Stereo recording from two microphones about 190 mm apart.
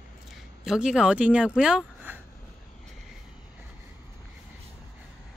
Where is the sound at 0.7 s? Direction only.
5° right (ahead or behind).